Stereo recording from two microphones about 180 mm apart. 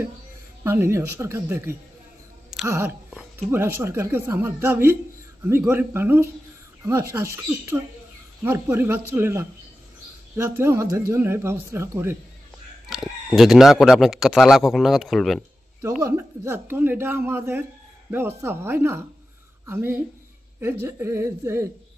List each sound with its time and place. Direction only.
0.7 s speech: 15° right (ahead or behind)
12.9 s speech: centre (ahead or behind)
16.0 s speech: 15° right (ahead or behind)